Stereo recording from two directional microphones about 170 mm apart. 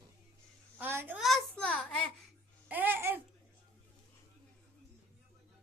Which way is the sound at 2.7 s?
10° right (ahead or behind).